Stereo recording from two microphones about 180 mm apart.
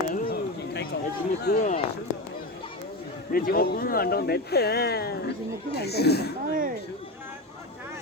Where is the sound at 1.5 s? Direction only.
65° left (ahead or behind).